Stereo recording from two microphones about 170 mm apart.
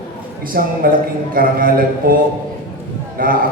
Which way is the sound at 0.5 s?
60° right (ahead or behind).